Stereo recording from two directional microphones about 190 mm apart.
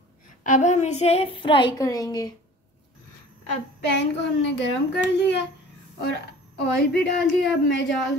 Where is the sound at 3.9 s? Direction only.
65° left (ahead or behind).